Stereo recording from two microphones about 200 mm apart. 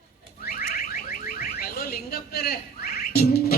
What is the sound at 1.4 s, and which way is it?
Music, 50° left (ahead or behind).